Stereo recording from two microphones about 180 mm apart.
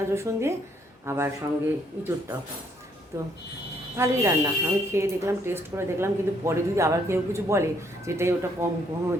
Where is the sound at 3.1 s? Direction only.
15° right (ahead or behind).